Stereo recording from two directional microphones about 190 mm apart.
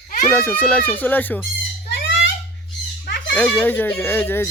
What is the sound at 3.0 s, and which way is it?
Bird, 65° left (ahead or behind).